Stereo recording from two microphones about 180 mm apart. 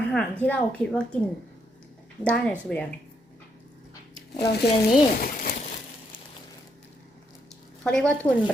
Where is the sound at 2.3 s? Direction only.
5° left (ahead or behind).